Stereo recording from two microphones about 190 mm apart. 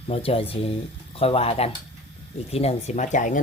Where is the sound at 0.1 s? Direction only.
30° left (ahead or behind).